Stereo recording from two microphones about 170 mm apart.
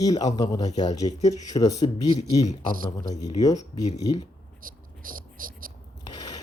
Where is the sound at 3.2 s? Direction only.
25° left (ahead or behind).